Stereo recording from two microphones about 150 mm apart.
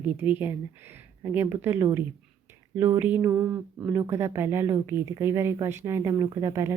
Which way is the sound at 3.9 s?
15° right (ahead or behind).